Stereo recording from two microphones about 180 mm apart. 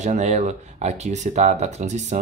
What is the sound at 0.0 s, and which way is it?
Speech, 40° right (ahead or behind).